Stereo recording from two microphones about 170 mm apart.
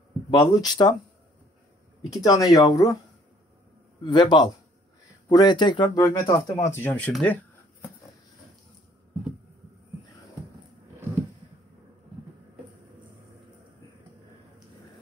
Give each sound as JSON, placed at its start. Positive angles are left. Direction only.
{"t": 0.3, "sound": "speech", "side_deg": 25}
{"t": 2.0, "sound": "speech", "side_deg": 20}
{"t": 4.0, "sound": "speech", "side_deg": 25}